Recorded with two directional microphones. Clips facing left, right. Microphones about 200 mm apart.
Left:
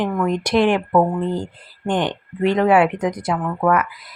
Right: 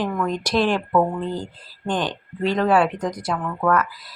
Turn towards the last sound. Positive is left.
turn(degrees=10)  # may be behind; listen again after turning